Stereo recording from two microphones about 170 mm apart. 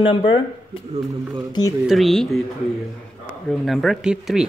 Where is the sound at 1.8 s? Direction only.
Centre (ahead or behind).